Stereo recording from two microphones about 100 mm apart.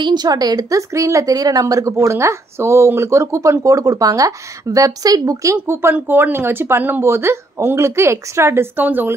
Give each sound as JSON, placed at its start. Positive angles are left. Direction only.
{"t": 0.0, "sound": "speech", "side_deg": -45}